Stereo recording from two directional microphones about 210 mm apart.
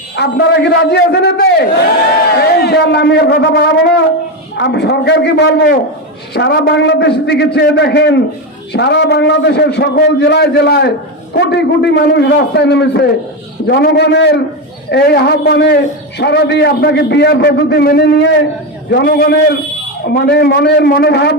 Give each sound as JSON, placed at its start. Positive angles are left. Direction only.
{"t": 0.2, "sound": "a man's voice", "side_deg": 50}